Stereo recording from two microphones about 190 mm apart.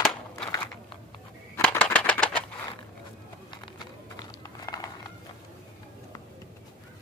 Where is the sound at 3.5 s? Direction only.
25° left (ahead or behind).